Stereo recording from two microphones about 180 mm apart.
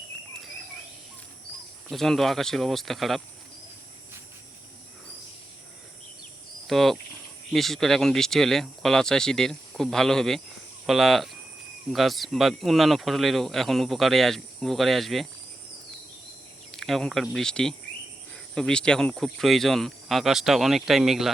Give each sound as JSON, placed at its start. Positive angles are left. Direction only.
{"t": 1.9, "sound": "speech", "side_deg": 0}
{"t": 6.7, "sound": "speech", "side_deg": 0}
{"t": 16.7, "sound": "speech", "side_deg": 0}